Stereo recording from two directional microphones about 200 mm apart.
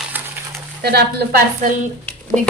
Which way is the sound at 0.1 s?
10° right (ahead or behind).